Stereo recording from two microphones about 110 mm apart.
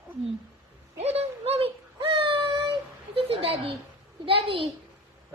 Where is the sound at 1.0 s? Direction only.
70° right (ahead or behind).